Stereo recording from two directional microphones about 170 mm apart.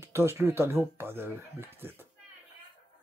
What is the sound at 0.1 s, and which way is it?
Speech, 15° right (ahead or behind).